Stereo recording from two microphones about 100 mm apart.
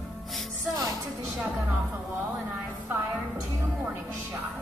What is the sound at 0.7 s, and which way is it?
Music, 35° right (ahead or behind).